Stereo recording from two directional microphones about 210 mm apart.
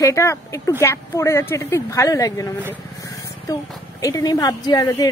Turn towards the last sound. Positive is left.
turn(degrees=15)  # may be behind; listen again after turning